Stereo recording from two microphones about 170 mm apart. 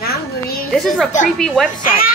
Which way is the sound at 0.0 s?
65° left (ahead or behind).